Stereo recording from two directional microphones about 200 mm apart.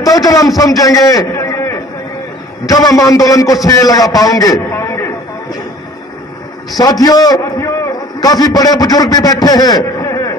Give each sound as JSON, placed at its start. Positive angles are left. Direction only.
{"t": 0.0, "sound": "a man's voice", "side_deg": 15}
{"t": 6.8, "sound": "a man's voice", "side_deg": 20}